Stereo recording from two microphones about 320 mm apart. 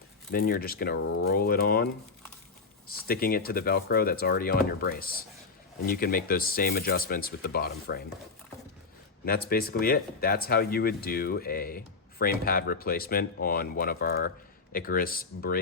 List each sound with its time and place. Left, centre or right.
0.3 s speech: left
9.2 s speech: left